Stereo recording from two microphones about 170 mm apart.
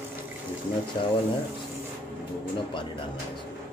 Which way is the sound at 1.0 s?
30° left (ahead or behind).